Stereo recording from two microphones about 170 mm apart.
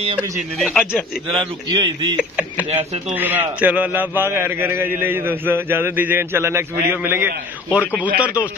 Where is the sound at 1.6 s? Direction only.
25° right (ahead or behind).